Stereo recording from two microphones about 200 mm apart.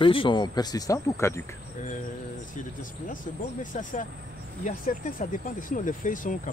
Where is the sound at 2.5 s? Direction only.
40° left (ahead or behind).